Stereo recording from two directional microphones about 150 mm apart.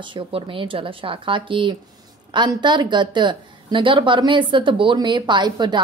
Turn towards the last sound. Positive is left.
turn(degrees=-30)  # may be behind; listen again after turning